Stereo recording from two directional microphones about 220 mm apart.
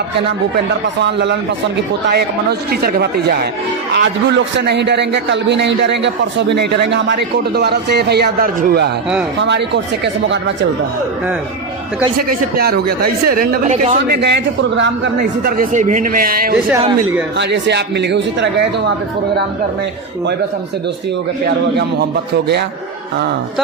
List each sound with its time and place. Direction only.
1.0 s a man's voice: 50° right (ahead or behind)
12.5 s speech: 45° right (ahead or behind)
14.0 s a man's voice: 50° right (ahead or behind)
15.5 s a man's voice: 35° right (ahead or behind); by 18.5 s 50° right (ahead or behind)
21.4 s a man's voice: 50° right (ahead or behind)